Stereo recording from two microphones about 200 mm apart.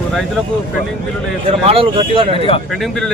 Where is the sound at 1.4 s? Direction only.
30° right (ahead or behind).